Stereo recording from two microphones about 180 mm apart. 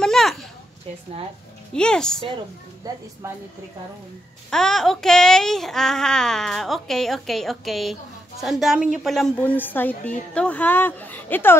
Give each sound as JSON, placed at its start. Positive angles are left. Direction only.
{"t": 0.0, "sound": "a sound", "side_deg": 0}
{"t": 1.7, "sound": "child singing", "side_deg": 5}
{"t": 2.8, "sound": "a woman's voice", "side_deg": -20}
{"t": 4.5, "sound": "child singing", "side_deg": 5}
{"t": 10.3, "sound": "speech", "side_deg": 5}